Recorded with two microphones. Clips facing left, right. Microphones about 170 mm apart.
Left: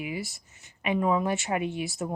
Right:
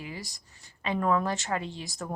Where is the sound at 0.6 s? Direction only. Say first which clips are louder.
Left 3 dB; 20° left (ahead or behind).